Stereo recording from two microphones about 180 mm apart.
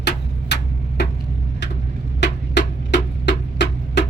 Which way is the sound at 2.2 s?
75° left (ahead or behind).